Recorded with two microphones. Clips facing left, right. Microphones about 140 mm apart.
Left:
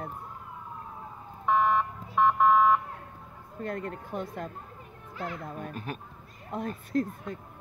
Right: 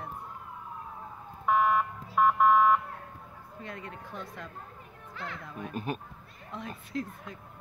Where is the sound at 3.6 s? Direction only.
50° left (ahead or behind).